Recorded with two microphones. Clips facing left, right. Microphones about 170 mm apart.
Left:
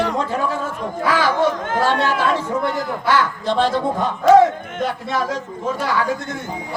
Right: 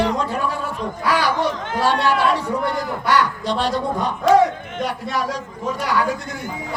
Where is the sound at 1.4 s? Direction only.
50° left (ahead or behind).